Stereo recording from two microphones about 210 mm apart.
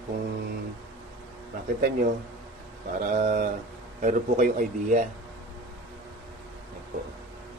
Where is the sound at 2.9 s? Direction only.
35° right (ahead or behind).